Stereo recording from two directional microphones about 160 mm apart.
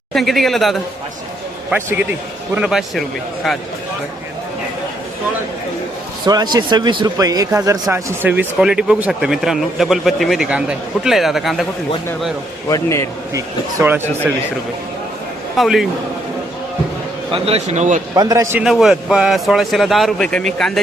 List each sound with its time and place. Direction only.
0.1 s a man's voice: centre (ahead or behind)
1.7 s a man's voice: 10° right (ahead or behind)
6.2 s speech: 25° right (ahead or behind); by 11.6 s centre (ahead or behind)
12.6 s a man's voice: 20° left (ahead or behind)
13.3 s speech: 15° right (ahead or behind)
15.5 s a man's voice: centre (ahead or behind)
17.3 s speech: 40° right (ahead or behind)
18.1 s a man's voice: 20° right (ahead or behind)
18.6 s a man's voice: centre (ahead or behind)